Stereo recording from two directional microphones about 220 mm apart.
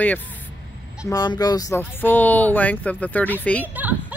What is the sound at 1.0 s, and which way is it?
Speech, 15° left (ahead or behind).